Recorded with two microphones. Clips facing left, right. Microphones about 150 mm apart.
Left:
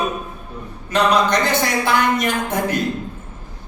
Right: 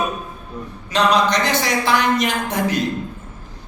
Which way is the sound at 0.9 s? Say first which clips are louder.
Even; 55° left (ahead or behind).